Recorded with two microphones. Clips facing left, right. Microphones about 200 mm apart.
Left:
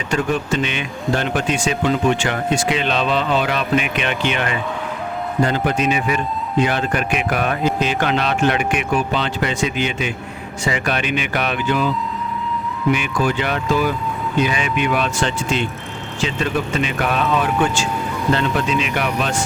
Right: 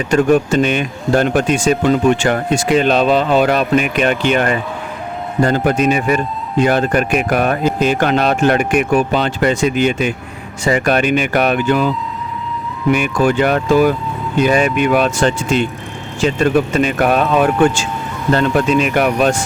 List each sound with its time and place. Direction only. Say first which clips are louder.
0.1 s speech: right 8 dB; 45° right (ahead or behind)
12.9 s speech: right 6 dB; 50° right (ahead or behind)